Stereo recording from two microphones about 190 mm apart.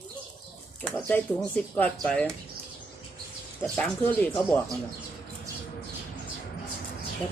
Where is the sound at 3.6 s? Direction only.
5° left (ahead or behind).